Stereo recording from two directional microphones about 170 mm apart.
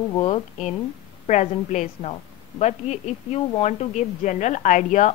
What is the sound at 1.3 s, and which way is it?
Speech, 45° left (ahead or behind).